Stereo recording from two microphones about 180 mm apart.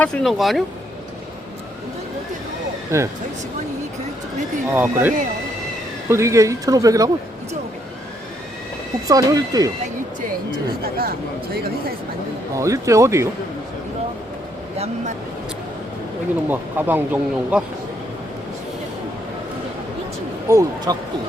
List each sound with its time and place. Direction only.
0.0 s speech: 5° left (ahead or behind)
2.9 s speech: 15° right (ahead or behind)
4.7 s speech: 10° right (ahead or behind)
9.0 s speech: 20° right (ahead or behind)
10.8 s speech: 55° right (ahead or behind)
12.5 s speech: 15° right (ahead or behind)
16.5 s speech: 10° right (ahead or behind)
20.5 s speech: 15° right (ahead or behind)